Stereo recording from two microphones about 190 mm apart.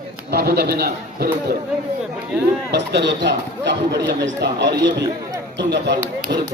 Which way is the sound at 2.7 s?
65° right (ahead or behind).